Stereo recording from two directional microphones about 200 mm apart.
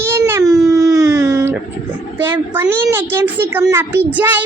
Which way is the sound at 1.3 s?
15° right (ahead or behind).